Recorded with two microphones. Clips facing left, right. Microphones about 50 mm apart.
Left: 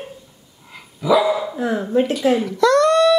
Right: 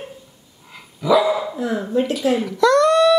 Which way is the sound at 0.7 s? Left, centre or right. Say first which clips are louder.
Even; centre.